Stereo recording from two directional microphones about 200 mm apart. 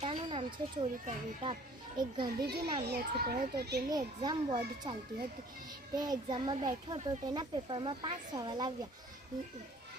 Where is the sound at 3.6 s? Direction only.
55° right (ahead or behind).